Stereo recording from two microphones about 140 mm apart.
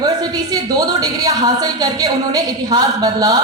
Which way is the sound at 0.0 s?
25° right (ahead or behind).